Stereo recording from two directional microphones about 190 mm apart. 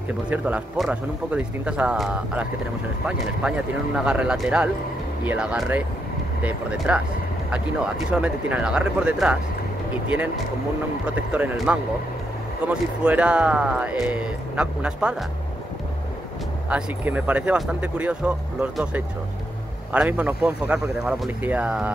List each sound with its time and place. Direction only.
0.3 s speech: 5° right (ahead or behind)
16.6 s speech: 10° right (ahead or behind)